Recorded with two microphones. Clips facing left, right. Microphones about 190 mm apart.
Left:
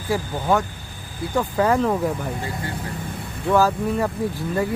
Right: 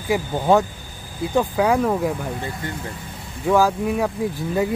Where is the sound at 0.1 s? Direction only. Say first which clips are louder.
Right 4 dB; 20° right (ahead or behind).